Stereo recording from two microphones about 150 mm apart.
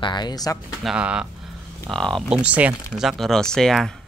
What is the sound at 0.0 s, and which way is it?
Speech, 30° left (ahead or behind).